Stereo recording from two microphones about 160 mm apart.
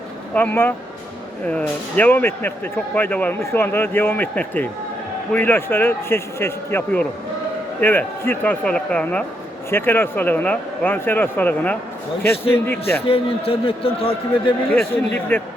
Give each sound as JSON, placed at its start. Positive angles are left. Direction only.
{"t": 0.3, "sound": "speech", "side_deg": 10}
{"t": 13.1, "sound": "a man's voice", "side_deg": 35}
{"t": 15.3, "sound": "speech", "side_deg": 15}